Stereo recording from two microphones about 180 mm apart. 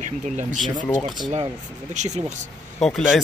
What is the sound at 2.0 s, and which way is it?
Speech, 40° right (ahead or behind).